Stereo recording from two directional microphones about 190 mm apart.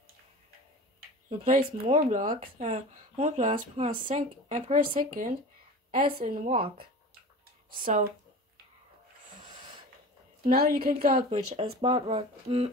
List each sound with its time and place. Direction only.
1.4 s speech: 40° right (ahead or behind)
2.3 s a woman's voice: 30° right (ahead or behind); by 6.5 s 50° right (ahead or behind)
7.7 s a woman's voice: 45° right (ahead or behind)
10.4 s a woman's voice: 50° right (ahead or behind)
11.2 s speech: 30° right (ahead or behind)